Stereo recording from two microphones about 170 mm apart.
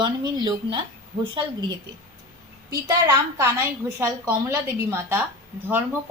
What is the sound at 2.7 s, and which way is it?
A woman's voice, 20° right (ahead or behind).